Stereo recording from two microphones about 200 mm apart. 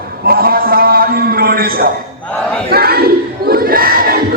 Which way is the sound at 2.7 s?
50° right (ahead or behind).